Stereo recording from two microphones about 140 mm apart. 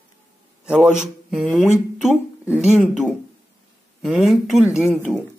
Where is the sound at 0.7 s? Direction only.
10° right (ahead or behind).